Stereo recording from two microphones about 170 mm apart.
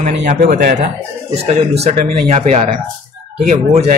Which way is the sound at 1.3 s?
40° right (ahead or behind).